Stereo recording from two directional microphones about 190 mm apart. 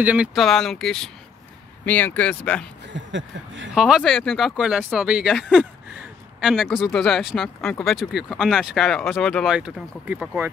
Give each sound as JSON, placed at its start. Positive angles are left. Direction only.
{"t": 0.0, "sound": "speech", "side_deg": -5}
{"t": 2.9, "sound": "speech", "side_deg": -75}
{"t": 3.7, "sound": "speech", "side_deg": -5}